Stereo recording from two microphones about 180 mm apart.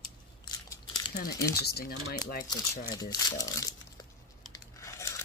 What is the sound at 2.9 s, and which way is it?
Speech, 20° left (ahead or behind).